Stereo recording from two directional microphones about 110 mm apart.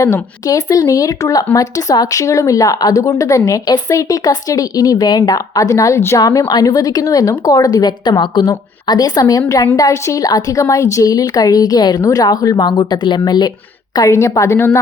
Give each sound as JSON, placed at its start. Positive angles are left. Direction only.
{"t": 0.0, "sound": "speech", "side_deg": 30}
{"t": 13.9, "sound": "a woman's voice", "side_deg": 30}